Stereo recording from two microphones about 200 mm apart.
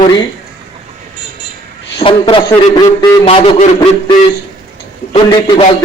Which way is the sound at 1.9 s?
25° left (ahead or behind).